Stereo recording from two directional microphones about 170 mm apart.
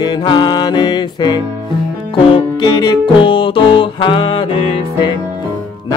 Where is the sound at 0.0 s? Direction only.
25° left (ahead or behind).